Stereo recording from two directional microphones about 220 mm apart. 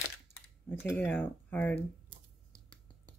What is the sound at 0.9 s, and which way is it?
Speech, 10° left (ahead or behind).